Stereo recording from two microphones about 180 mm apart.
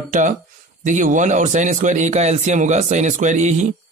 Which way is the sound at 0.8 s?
45° right (ahead or behind).